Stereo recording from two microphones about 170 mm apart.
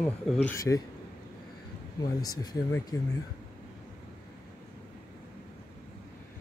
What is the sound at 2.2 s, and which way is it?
Speech, 20° left (ahead or behind).